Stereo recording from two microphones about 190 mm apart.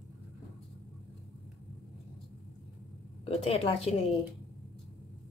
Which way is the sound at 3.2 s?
30° left (ahead or behind).